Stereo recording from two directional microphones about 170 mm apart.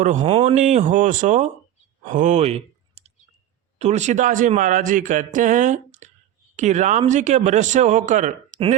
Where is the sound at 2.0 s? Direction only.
45° right (ahead or behind).